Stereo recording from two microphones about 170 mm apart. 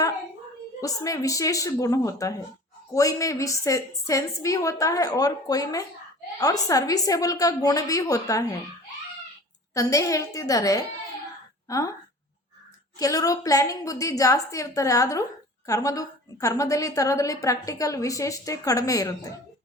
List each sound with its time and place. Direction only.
0.8 s a woman's voice: 20° left (ahead or behind)
9.7 s a woman's voice: 20° left (ahead or behind)
13.0 s a woman's voice: 20° left (ahead or behind)